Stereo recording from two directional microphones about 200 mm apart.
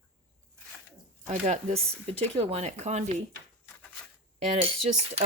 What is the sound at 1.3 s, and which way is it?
Speech, 35° right (ahead or behind).